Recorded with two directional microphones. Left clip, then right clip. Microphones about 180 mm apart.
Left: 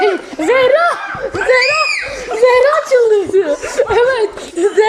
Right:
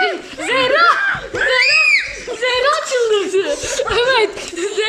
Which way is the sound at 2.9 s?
Centre (ahead or behind).